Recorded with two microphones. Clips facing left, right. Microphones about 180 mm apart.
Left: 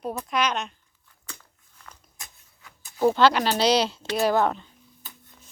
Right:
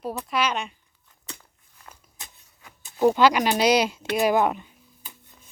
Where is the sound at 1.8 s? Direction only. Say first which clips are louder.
Right 1 dB; 30° right (ahead or behind).